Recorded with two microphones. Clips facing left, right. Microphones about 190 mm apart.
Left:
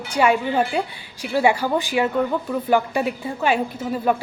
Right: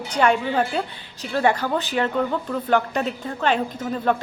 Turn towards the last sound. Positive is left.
turn(degrees=10)  # may be behind; listen again after turning